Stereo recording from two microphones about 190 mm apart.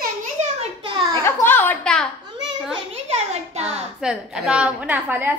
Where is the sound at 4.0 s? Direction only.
5° right (ahead or behind).